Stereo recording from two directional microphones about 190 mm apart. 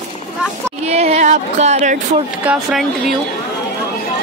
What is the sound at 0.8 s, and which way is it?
Music, 35° right (ahead or behind).